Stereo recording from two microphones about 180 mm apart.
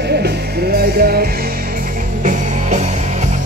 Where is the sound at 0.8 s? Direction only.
55° right (ahead or behind).